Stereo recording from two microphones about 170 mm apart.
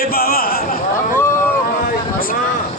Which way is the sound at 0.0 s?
60° left (ahead or behind).